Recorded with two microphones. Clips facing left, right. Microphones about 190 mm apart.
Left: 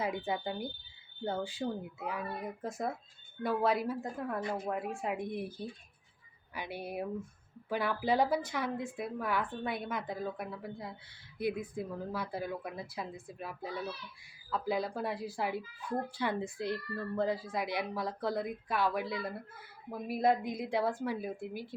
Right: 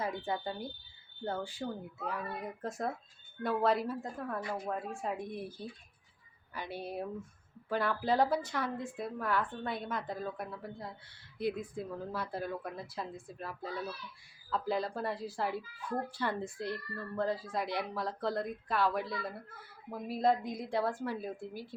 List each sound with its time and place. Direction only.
0.0 s a woman's voice: 15° left (ahead or behind)
2.0 s a woman's voice: 5° left (ahead or behind)